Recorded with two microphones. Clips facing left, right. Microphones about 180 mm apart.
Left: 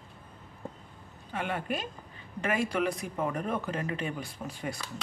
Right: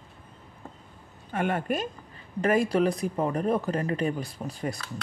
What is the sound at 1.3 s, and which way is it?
A woman's voice, 50° right (ahead or behind).